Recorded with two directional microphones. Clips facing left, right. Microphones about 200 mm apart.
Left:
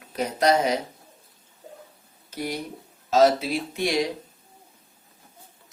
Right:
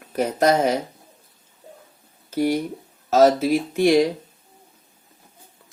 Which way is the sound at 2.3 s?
50° right (ahead or behind).